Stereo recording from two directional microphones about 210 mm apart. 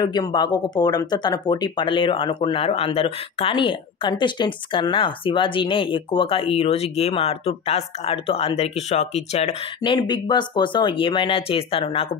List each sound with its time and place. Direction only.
0.0 s speech: 20° left (ahead or behind)
9.8 s speech: 20° left (ahead or behind)